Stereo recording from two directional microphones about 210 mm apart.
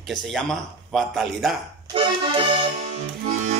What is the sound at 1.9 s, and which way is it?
Accordion, 25° right (ahead or behind).